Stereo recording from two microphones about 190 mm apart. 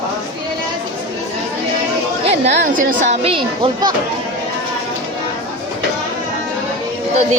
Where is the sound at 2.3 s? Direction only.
40° right (ahead or behind).